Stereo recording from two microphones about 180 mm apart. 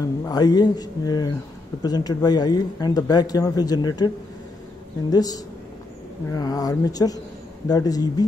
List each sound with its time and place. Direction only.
0.2 s speech: 20° left (ahead or behind)
5.1 s speech: 20° left (ahead or behind)